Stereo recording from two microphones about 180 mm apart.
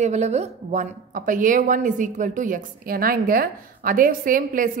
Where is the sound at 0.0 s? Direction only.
40° right (ahead or behind).